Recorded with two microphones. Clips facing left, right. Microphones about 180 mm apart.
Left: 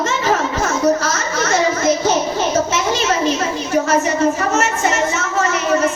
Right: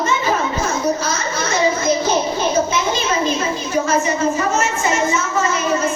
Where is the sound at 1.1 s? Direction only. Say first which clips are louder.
Left 2 dB; 80° left.